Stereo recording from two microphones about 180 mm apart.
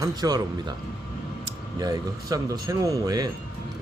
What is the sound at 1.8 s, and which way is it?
Speech, 20° right (ahead or behind).